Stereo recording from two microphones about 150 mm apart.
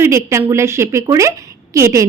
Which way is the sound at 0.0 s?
15° right (ahead or behind).